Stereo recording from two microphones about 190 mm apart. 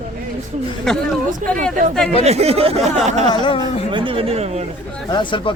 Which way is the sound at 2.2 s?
35° right (ahead or behind).